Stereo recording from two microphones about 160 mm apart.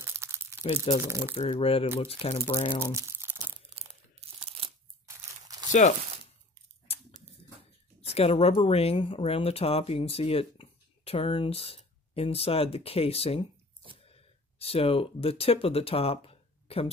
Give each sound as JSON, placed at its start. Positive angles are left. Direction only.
{"t": 0.2, "sound": "crumpling", "side_deg": -15}
{"t": 0.9, "sound": "speech", "side_deg": 35}
{"t": 2.9, "sound": "crumpling", "side_deg": -15}
{"t": 3.7, "sound": "crunch", "side_deg": -35}
{"t": 5.0, "sound": "crunch", "side_deg": -25}
{"t": 5.7, "sound": "speech", "side_deg": 50}
{"t": 6.9, "sound": "a sound", "side_deg": 40}
{"t": 8.0, "sound": "speech", "side_deg": 40}